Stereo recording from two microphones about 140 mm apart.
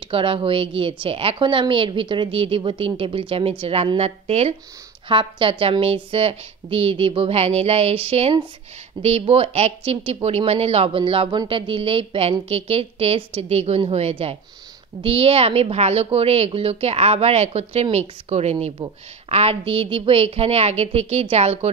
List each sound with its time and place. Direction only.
0.1 s a woman's voice: 40° right (ahead or behind)